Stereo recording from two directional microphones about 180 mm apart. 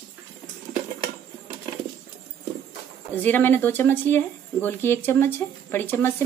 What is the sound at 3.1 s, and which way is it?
Speech, 10° left (ahead or behind).